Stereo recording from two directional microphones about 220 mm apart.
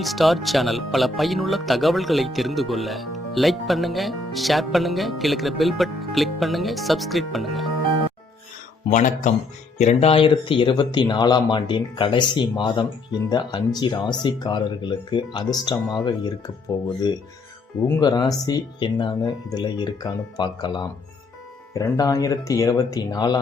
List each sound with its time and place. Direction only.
0.0 s speech: centre (ahead or behind)
8.9 s speech: 35° left (ahead or behind); by 16.3 s 20° left (ahead or behind)
17.8 s speech: 15° left (ahead or behind)